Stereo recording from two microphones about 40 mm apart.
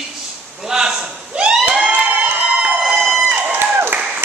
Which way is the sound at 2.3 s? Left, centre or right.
Right.